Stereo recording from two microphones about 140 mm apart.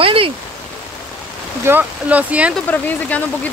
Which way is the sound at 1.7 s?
10° right (ahead or behind).